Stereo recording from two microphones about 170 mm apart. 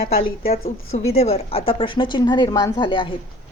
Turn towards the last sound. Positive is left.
turn(degrees=30)  # may be behind; listen again after turning